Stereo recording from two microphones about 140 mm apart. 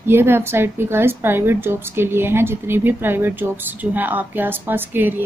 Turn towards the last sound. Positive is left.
turn(degrees=-15)  # may be behind; listen again after turning